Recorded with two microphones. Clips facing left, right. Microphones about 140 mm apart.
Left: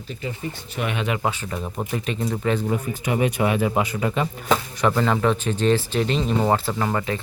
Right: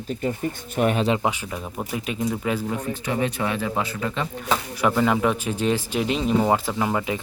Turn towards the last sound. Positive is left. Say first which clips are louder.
# even
turn(degrees=-10)  # may be behind; listen again after turning